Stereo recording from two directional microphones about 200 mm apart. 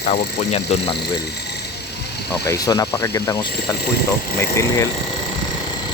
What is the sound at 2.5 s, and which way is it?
Speech, 15° left (ahead or behind).